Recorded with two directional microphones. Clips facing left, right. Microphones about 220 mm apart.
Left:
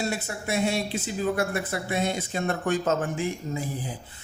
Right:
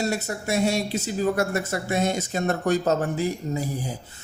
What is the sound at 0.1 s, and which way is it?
Speech, 40° right (ahead or behind).